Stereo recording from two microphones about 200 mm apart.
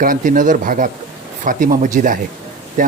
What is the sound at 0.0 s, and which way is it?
Speech, 45° right (ahead or behind).